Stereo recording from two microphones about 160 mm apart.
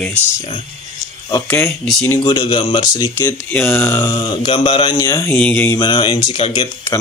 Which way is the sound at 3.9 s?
30° left (ahead or behind).